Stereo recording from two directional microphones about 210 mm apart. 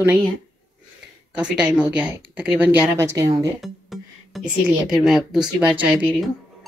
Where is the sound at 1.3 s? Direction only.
5° right (ahead or behind).